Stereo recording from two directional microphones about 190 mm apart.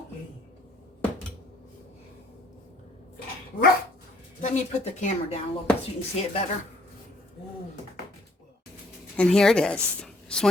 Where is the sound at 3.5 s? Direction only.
50° left (ahead or behind).